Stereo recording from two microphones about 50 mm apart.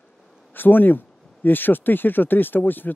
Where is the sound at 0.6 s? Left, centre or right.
Left.